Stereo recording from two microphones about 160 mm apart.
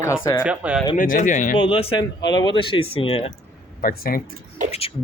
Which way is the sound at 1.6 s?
35° left (ahead or behind).